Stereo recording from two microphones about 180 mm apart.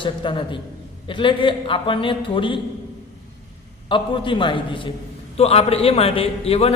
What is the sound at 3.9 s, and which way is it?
A man's voice, 25° left (ahead or behind).